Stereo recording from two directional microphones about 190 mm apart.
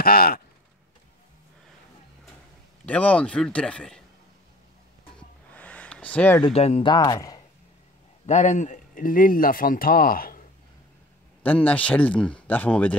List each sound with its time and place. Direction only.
0.0 s speech: 50° left (ahead or behind)
2.8 s a man's voice: 5° left (ahead or behind)
5.5 s a sound: 5° left (ahead or behind)
6.4 s speech: 35° left (ahead or behind)
8.3 s speech: 40° left (ahead or behind)
11.4 s speech: 10° left (ahead or behind)